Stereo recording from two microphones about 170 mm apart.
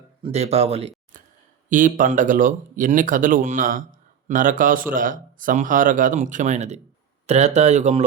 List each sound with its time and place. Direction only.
0.2 s speech: 40° right (ahead or behind)
1.1 s a sound: 50° right (ahead or behind)
1.7 s speech: 50° right (ahead or behind)